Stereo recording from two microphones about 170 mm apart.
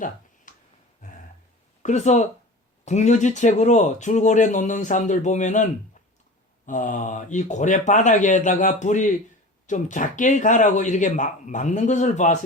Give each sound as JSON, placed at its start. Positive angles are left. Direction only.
{"t": 0.5, "sound": "a sound", "side_deg": 50}
{"t": 1.8, "sound": "speech", "side_deg": 45}
{"t": 6.7, "sound": "speech", "side_deg": 50}